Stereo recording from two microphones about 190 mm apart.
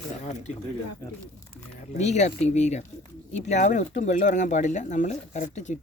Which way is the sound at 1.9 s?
35° left (ahead or behind).